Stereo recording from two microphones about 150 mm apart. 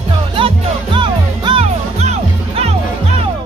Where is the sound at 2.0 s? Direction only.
45° right (ahead or behind).